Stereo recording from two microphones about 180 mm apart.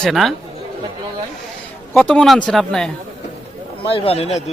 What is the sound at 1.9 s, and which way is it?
Speech, 5° left (ahead or behind).